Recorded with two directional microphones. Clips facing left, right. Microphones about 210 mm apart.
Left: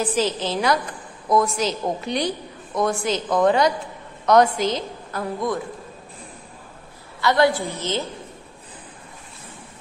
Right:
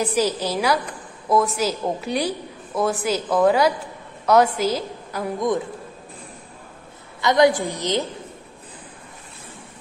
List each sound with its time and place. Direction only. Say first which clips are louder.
0.0 s a woman's voice: right 1 dB; 10° right (ahead or behind)
7.2 s a woman's voice: right 2 dB; 20° right (ahead or behind)